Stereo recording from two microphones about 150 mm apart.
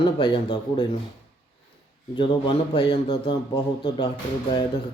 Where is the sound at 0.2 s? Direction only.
35° left (ahead or behind).